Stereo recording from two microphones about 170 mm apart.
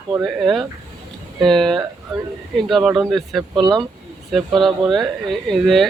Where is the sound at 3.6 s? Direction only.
25° right (ahead or behind).